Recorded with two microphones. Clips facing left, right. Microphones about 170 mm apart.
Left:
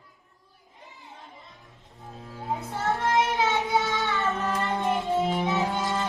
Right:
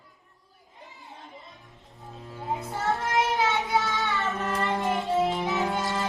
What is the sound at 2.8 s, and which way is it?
Child singing, centre (ahead or behind).